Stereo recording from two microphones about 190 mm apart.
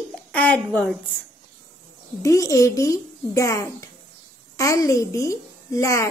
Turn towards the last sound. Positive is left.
turn(degrees=15)  # may be behind; listen again after turning